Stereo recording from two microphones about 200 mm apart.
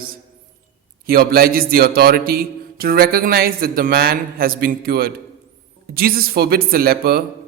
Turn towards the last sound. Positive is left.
turn(degrees=-50)  # may be behind; listen again after turning